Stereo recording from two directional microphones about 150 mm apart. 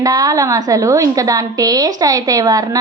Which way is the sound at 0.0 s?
25° right (ahead or behind).